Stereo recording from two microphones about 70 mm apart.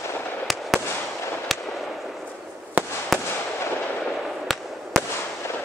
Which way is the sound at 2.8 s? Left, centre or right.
Right.